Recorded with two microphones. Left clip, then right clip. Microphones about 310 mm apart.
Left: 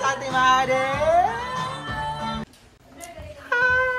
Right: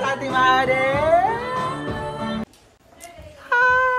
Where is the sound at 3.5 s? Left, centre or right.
Centre.